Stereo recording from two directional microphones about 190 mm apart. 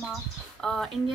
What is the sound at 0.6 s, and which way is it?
Speech, centre (ahead or behind).